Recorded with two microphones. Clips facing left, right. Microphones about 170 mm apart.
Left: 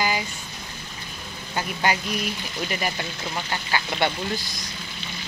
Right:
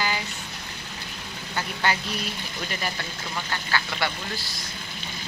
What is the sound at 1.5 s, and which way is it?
Speech, 15° left (ahead or behind).